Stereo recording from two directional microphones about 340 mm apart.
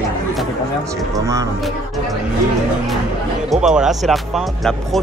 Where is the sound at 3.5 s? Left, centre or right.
Centre.